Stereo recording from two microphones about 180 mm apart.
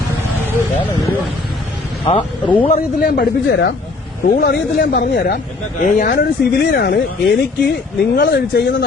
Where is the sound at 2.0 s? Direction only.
30° left (ahead or behind).